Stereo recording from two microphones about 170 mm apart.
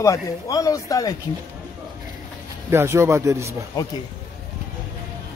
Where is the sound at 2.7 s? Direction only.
15° right (ahead or behind).